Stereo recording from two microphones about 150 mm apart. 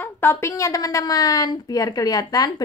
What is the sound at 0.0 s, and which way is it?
A woman's voice, 15° left (ahead or behind).